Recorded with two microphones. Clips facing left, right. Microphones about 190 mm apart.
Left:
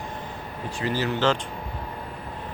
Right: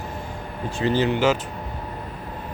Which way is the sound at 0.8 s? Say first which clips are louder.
Right 5 dB; 20° right (ahead or behind).